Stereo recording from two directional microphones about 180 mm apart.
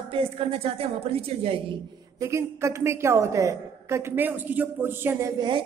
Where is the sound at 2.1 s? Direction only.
15° right (ahead or behind).